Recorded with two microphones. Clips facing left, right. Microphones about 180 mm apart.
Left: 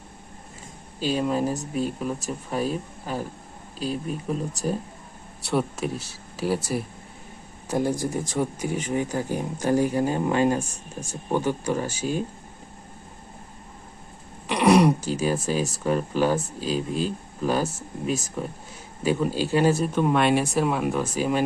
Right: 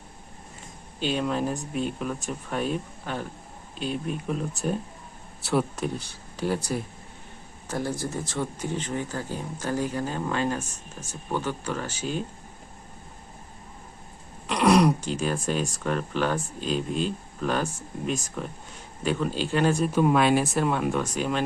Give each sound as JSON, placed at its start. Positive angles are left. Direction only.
{"t": 0.9, "sound": "speech", "side_deg": 40}
{"t": 1.2, "sound": "speech", "side_deg": 5}
{"t": 4.3, "sound": "speech", "side_deg": 0}
{"t": 14.4, "sound": "speech", "side_deg": 10}